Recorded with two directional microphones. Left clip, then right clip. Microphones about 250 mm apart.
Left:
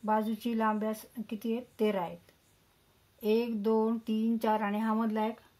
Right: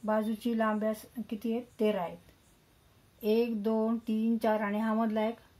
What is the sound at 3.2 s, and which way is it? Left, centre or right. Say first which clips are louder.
Speech: even; left.